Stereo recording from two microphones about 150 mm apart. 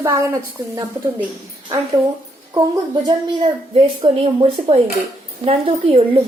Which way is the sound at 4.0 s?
45° right (ahead or behind).